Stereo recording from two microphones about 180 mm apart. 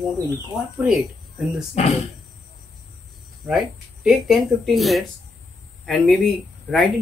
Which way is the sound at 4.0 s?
Centre (ahead or behind).